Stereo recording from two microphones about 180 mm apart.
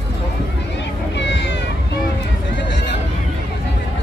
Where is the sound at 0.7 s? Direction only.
75° left (ahead or behind).